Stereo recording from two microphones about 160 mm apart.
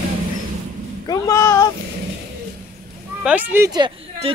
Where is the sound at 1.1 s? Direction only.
20° left (ahead or behind).